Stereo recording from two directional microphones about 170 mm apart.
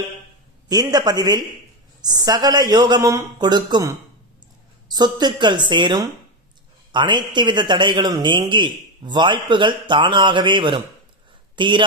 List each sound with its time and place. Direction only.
0.7 s a man's voice: 25° right (ahead or behind)